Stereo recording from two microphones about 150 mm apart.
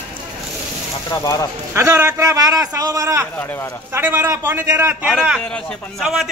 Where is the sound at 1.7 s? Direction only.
20° right (ahead or behind).